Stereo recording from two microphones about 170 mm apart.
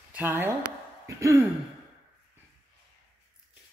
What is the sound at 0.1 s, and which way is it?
Speech, 10° right (ahead or behind).